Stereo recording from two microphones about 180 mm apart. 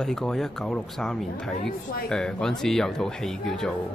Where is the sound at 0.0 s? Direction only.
5° left (ahead or behind).